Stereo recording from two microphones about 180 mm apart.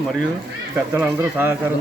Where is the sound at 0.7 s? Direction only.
15° right (ahead or behind).